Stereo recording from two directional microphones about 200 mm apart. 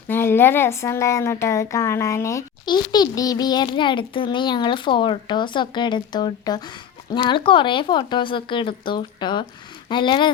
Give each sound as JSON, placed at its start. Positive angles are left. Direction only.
{"t": 0.1, "sound": "a woman's voice", "side_deg": 10}